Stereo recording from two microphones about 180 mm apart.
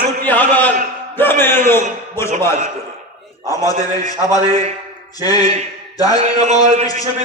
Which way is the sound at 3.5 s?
20° left (ahead or behind).